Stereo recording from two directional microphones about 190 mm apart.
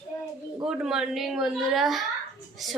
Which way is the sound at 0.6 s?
5° right (ahead or behind).